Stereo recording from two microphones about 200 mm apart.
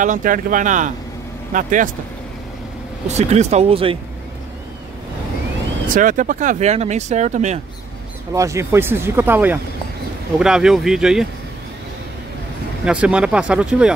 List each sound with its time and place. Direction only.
0.0 s speech: 40° right (ahead or behind)
3.1 s speech: 35° right (ahead or behind)
5.9 s speech: 40° right (ahead or behind)
8.3 s speech: 15° right (ahead or behind)
12.8 s speech: 5° right (ahead or behind)